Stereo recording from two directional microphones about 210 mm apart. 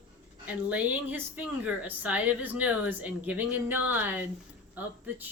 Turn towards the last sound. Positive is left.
turn(degrees=-10)  # may be behind; listen again after turning